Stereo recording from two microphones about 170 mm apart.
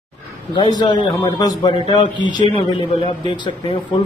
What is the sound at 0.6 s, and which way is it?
A man's voice, 25° left (ahead or behind).